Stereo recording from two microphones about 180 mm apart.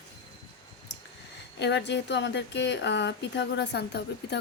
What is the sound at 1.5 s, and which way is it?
Speech, 75° left (ahead or behind).